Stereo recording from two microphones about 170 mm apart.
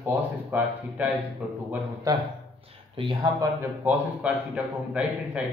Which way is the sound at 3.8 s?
10° right (ahead or behind).